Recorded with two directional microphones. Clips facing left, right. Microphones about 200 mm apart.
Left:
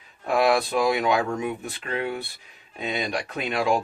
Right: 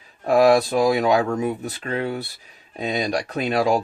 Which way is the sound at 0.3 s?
40° right (ahead or behind).